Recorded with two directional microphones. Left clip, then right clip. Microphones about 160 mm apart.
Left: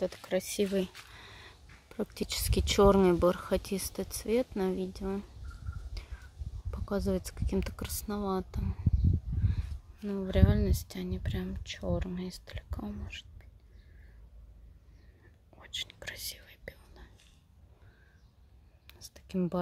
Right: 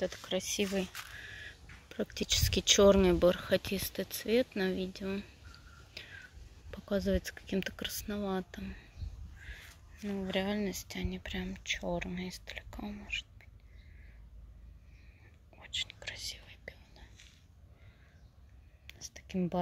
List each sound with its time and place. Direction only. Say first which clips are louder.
0.0 s speech: left 3 dB; 35° left (ahead or behind)
1.1 s a sound: right 4 dB; 35° left (ahead or behind)
1.9 s speech: right 2 dB; 20° left (ahead or behind)
6.7 s speech: even; 15° left (ahead or behind)
10.1 s speech: left 2 dB; 30° left (ahead or behind)
15.5 s whispering: right 1 dB; 35° left (ahead or behind)
18.9 s whispering: right 1 dB; 30° left (ahead or behind)